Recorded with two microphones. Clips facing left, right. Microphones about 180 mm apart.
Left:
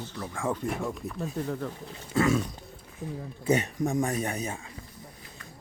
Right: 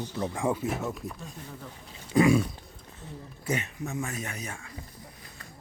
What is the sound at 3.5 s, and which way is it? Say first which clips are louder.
Speech: left 6 dB; 35° left (ahead or behind).